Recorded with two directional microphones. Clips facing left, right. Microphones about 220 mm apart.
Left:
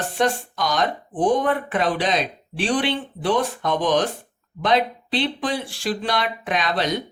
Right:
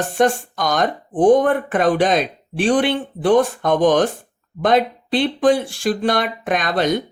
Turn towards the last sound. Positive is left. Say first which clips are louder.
# right 4 dB
turn(degrees=-50)  # may be behind; listen again after turning